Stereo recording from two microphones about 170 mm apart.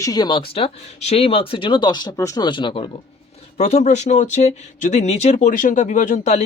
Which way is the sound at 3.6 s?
40° left (ahead or behind).